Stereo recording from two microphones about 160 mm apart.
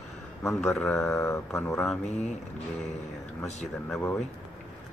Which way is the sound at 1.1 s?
15° left (ahead or behind).